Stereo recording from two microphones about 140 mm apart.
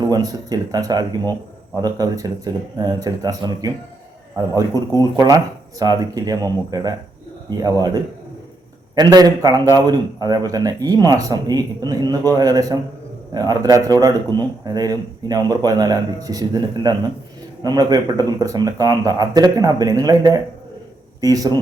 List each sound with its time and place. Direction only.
0.0 s speech: 30° right (ahead or behind)
9.0 s speech: 30° right (ahead or behind)